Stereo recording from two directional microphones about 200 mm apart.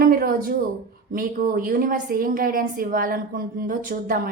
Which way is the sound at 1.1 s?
45° right (ahead or behind).